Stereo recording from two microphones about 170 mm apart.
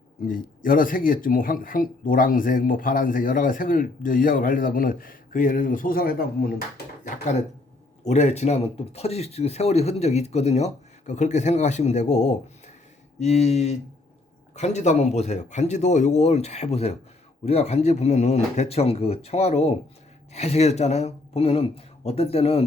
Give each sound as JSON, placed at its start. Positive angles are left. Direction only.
{"t": 0.3, "sound": "speech", "side_deg": 55}
{"t": 7.0, "sound": "speech", "side_deg": 45}